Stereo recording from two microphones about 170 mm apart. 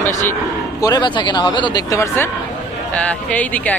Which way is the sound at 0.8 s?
25° left (ahead or behind).